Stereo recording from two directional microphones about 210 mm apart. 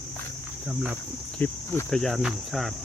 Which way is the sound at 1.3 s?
5° left (ahead or behind).